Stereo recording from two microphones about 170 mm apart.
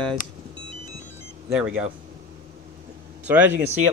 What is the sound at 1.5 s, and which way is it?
Speech, 5° right (ahead or behind).